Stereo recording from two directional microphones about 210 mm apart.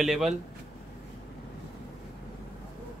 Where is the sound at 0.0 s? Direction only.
Centre (ahead or behind).